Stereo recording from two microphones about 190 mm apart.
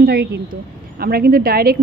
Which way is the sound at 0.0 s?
60° right (ahead or behind).